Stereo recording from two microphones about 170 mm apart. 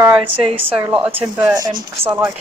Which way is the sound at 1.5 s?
20° right (ahead or behind).